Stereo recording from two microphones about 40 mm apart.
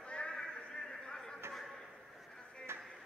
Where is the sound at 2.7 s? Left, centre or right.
Right.